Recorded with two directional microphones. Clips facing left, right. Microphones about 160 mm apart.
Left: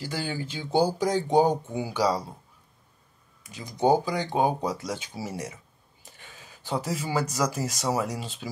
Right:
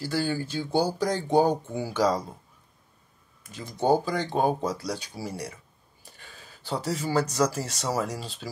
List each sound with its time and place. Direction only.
0.0 s speech: 15° left (ahead or behind)
3.6 s speech: 15° left (ahead or behind)
6.1 s a sound: 20° left (ahead or behind)
7.0 s speech: 15° left (ahead or behind)